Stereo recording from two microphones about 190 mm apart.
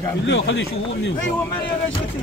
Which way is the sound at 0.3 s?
70° left (ahead or behind).